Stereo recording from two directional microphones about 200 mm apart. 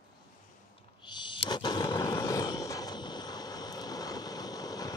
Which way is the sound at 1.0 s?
25° left (ahead or behind).